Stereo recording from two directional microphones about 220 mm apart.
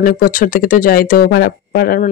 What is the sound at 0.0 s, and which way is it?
Speech, 40° left (ahead or behind).